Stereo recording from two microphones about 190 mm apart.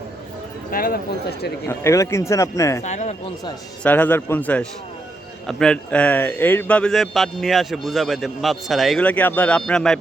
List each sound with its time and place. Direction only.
0.7 s speech: 50° left (ahead or behind)
1.6 s a man's voice: 15° left (ahead or behind)
2.8 s speech: 35° left (ahead or behind)
3.8 s a man's voice: 10° left (ahead or behind)